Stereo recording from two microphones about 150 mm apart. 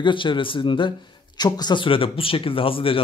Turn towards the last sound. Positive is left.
turn(degrees=35)  # may be behind; listen again after turning